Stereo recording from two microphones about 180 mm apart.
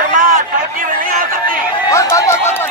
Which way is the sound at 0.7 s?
50° right (ahead or behind).